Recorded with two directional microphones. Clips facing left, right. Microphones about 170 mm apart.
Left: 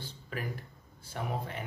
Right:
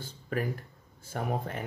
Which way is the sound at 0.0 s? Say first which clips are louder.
Right 7 dB; 45° right (ahead or behind).